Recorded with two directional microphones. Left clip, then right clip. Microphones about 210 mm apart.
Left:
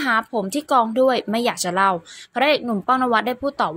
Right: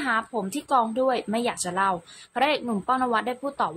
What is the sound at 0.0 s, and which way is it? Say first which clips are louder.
Speech: left 5 dB; 20° left (ahead or behind).